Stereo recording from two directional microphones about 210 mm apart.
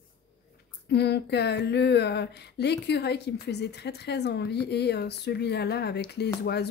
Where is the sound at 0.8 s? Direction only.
50° left (ahead or behind).